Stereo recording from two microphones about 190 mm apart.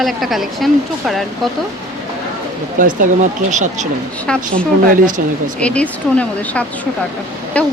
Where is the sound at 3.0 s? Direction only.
40° right (ahead or behind).